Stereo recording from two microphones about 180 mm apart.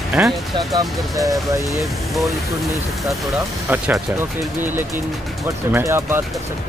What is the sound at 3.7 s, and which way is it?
Speech, 10° right (ahead or behind).